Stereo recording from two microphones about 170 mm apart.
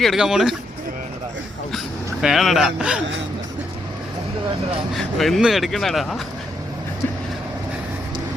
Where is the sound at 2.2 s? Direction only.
Centre (ahead or behind).